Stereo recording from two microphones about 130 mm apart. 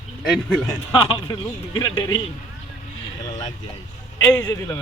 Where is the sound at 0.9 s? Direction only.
40° left (ahead or behind).